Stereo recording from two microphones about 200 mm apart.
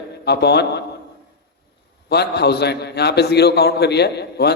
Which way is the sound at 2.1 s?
55° left (ahead or behind).